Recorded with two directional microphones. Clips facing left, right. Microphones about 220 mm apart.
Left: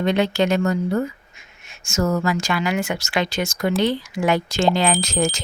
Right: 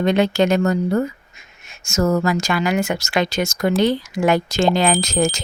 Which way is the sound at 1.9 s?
40° right (ahead or behind).